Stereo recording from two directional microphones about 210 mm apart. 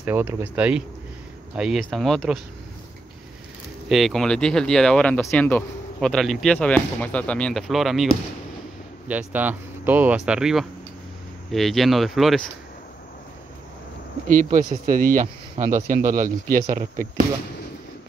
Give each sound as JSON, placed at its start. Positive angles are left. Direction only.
{"t": 0.0, "sound": "speech", "side_deg": -10}
{"t": 3.9, "sound": "speech", "side_deg": 0}
{"t": 14.2, "sound": "speech", "side_deg": -40}